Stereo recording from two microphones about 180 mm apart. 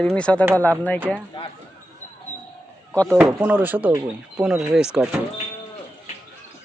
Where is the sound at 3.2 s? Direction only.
10° right (ahead or behind).